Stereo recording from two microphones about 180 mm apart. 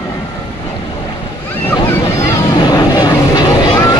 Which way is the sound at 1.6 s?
15° left (ahead or behind).